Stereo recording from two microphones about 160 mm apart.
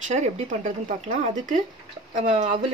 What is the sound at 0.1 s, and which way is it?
Speech, 45° right (ahead or behind).